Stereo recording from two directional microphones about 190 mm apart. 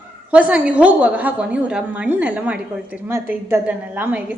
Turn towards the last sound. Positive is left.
turn(degrees=-10)  # may be behind; listen again after turning